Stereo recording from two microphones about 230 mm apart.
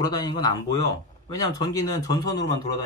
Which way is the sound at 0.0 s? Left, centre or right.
Centre.